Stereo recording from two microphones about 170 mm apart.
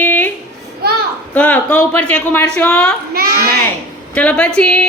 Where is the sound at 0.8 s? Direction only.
70° right (ahead or behind).